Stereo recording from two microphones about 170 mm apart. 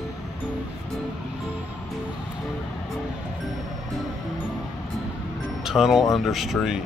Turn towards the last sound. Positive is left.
turn(degrees=0)  # may be behind; listen again after turning